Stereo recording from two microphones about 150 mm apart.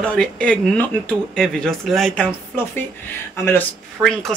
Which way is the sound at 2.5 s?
15° left (ahead or behind).